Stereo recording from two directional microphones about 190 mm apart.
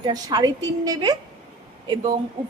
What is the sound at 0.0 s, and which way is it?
A woman's voice, 20° right (ahead or behind).